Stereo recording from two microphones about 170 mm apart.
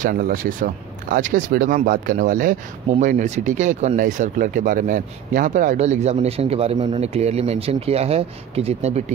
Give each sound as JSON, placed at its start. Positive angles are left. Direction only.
{"t": 0.0, "sound": "speech", "side_deg": -55}